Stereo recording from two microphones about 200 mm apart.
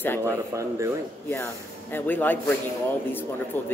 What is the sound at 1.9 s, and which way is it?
Speech, 10° left (ahead or behind).